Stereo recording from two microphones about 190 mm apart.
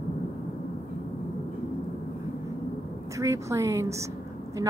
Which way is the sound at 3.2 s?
15° right (ahead or behind).